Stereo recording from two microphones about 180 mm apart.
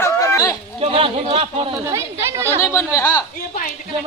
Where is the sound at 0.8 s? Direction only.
30° right (ahead or behind).